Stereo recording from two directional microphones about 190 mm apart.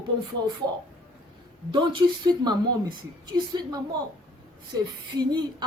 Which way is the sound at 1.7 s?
25° right (ahead or behind).